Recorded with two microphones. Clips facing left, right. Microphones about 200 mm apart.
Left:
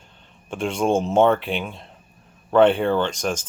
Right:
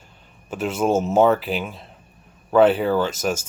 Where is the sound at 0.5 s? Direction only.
5° right (ahead or behind).